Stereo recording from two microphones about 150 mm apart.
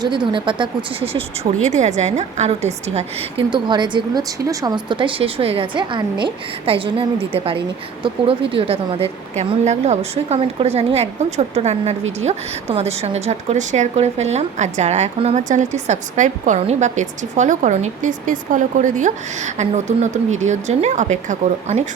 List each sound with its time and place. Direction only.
0.0 s a woman's voice: 35° right (ahead or behind)
1.6 s a woman's voice: 50° right (ahead or behind)